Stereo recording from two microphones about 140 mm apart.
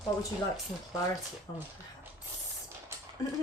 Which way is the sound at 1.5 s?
30° left (ahead or behind).